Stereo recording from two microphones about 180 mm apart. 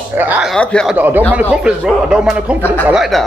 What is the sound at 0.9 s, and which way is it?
Speech, 10° right (ahead or behind).